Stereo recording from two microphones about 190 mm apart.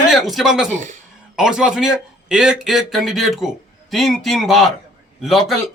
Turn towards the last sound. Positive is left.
turn(degrees=0)  # may be behind; listen again after turning